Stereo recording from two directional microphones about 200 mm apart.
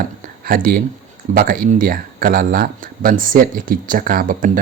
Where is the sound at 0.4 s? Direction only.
45° right (ahead or behind).